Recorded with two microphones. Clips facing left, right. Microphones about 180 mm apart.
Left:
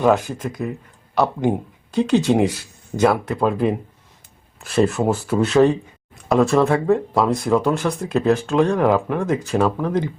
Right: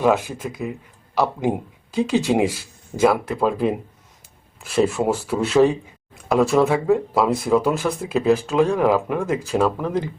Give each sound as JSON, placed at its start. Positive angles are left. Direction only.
{"t": 0.0, "sound": "speech", "side_deg": -5}